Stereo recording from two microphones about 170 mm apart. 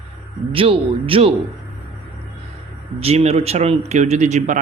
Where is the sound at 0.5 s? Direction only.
30° right (ahead or behind).